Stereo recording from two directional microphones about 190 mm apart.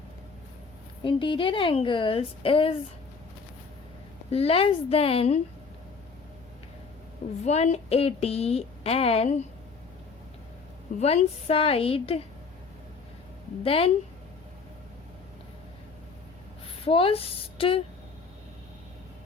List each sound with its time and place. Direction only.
1.0 s a woman's voice: 25° left (ahead or behind)
4.3 s a woman's voice: 30° left (ahead or behind)
7.4 s a woman's voice: 35° left (ahead or behind)
11.0 s a woman's voice: 35° left (ahead or behind)
13.6 s a woman's voice: 30° left (ahead or behind)
16.8 s a woman's voice: 30° left (ahead or behind)